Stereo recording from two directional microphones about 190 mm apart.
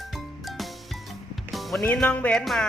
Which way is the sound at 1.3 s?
Centre (ahead or behind).